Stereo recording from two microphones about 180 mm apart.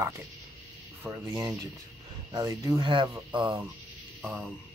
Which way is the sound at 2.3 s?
20° right (ahead or behind).